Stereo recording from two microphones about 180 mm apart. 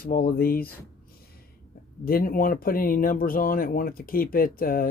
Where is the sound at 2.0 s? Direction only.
55° left (ahead or behind).